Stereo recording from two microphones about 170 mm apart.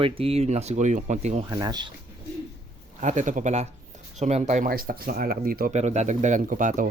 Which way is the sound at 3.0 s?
45° right (ahead or behind).